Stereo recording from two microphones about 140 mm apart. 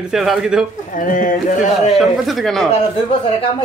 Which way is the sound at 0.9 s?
75° left (ahead or behind).